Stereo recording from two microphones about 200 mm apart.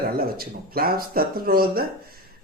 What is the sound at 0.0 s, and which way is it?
Speech, 50° right (ahead or behind).